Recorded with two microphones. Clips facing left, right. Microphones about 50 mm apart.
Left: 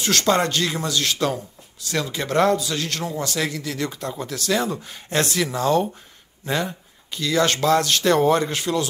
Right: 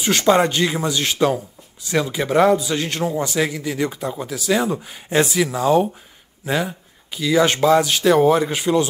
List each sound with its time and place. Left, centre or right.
0.0 s speech: centre
1.1 s speech: centre
1.8 s speech: centre